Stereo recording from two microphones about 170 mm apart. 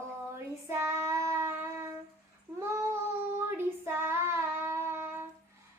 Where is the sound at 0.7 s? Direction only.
15° right (ahead or behind).